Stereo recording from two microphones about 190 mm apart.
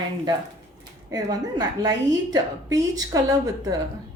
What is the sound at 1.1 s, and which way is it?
Speech, 20° right (ahead or behind).